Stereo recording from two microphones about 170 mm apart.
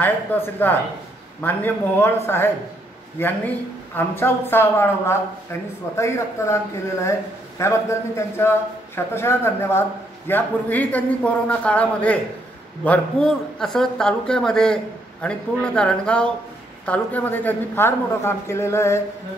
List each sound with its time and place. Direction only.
0.0 s speech: 10° left (ahead or behind)